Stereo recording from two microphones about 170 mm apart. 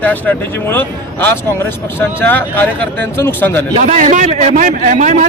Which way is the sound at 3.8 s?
45° right (ahead or behind).